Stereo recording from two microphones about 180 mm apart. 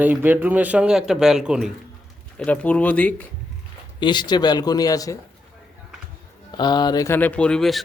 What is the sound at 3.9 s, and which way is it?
A man's voice, 25° left (ahead or behind).